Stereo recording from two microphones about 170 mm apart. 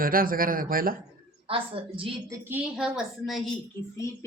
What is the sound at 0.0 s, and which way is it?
Speech, 55° right (ahead or behind).